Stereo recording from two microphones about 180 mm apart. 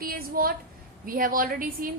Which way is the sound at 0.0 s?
55° right (ahead or behind).